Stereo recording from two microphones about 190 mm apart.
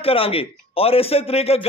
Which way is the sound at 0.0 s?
30° left (ahead or behind).